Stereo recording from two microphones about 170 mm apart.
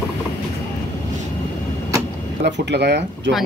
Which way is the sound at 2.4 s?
85° right.